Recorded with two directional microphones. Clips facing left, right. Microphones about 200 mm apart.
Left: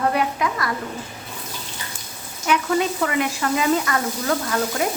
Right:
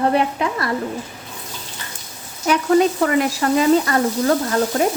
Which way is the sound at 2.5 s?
40° right (ahead or behind).